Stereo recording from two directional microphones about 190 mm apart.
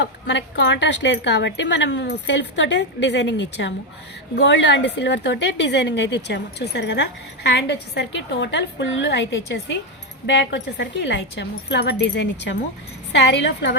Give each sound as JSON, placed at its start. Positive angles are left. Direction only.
{"t": 0.0, "sound": "a woman's voice", "side_deg": 70}